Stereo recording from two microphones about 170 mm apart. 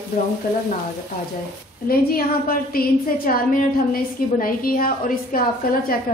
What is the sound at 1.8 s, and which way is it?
A woman's voice, 60° left (ahead or behind).